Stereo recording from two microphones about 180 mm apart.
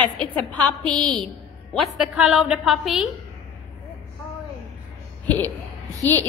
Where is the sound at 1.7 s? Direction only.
5° right (ahead or behind).